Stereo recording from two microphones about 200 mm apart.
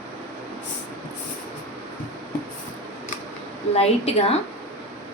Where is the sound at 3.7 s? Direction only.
30° left (ahead or behind).